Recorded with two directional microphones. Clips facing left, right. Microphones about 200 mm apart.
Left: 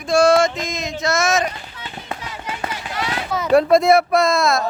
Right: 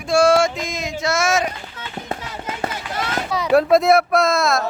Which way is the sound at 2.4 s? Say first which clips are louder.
Right 1 dB; 45° right (ahead or behind).